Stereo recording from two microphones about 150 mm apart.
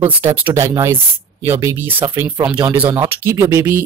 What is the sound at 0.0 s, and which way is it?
Speech, 15° right (ahead or behind).